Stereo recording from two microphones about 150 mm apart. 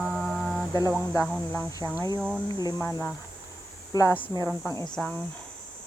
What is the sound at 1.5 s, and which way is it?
Speech, 20° left (ahead or behind).